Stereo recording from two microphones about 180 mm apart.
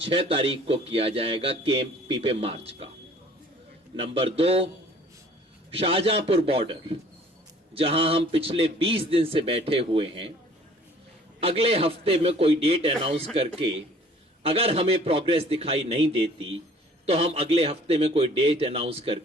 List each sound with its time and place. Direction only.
0.0 s a man's voice: 30° right (ahead or behind)
3.9 s a man's voice: 30° right (ahead or behind)
5.7 s a man's voice: 35° right (ahead or behind)
11.3 s a man's voice: 30° right (ahead or behind)